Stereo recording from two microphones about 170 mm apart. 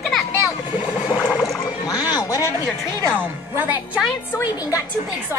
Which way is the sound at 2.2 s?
20° left (ahead or behind).